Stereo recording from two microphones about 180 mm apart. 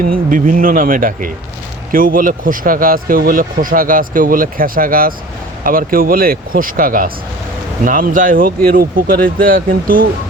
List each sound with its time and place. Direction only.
0.1 s speech: 50° right (ahead or behind)